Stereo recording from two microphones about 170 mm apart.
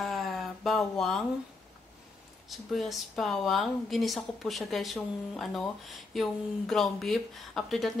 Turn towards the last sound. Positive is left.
turn(degrees=0)  # may be behind; listen again after turning